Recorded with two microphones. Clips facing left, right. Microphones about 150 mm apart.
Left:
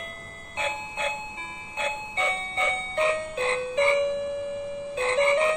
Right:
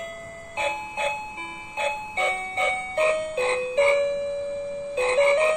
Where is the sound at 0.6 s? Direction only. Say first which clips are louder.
Right 3 dB; 20° right (ahead or behind).